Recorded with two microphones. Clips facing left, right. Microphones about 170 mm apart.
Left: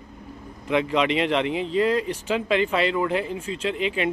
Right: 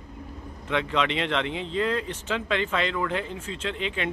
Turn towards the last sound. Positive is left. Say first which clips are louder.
# left 5 dB
turn(degrees=10)  # may be behind; listen again after turning